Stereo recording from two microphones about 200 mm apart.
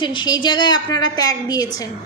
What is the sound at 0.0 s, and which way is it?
A woman's voice, 25° left (ahead or behind).